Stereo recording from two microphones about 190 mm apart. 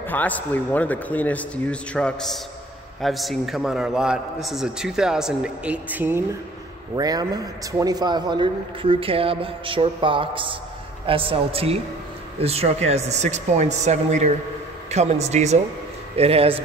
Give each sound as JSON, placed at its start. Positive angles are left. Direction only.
{"t": 0.0, "sound": "a man's voice", "side_deg": 10}